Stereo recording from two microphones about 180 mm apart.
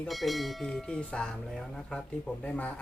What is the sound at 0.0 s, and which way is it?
Speech, centre (ahead or behind).